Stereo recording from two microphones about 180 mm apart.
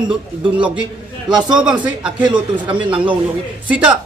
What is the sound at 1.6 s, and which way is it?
Speech, 5° right (ahead or behind).